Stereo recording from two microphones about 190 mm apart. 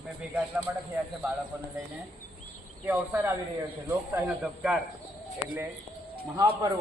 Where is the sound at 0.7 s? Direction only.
10° right (ahead or behind).